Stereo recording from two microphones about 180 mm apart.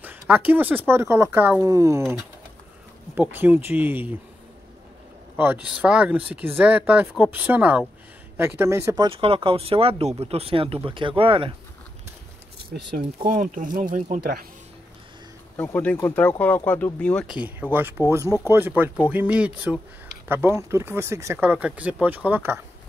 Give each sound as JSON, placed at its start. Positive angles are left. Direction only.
{"t": 0.0, "sound": "speech", "side_deg": -10}
{"t": 3.2, "sound": "speech", "side_deg": -10}
{"t": 5.4, "sound": "speech", "side_deg": -10}
{"t": 12.7, "sound": "speech", "side_deg": -55}
{"t": 15.5, "sound": "speech", "side_deg": 10}
{"t": 17.4, "sound": "speech", "side_deg": -10}